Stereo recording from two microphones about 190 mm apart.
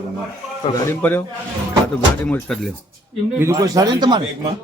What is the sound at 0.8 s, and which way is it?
Speech, 10° left (ahead or behind).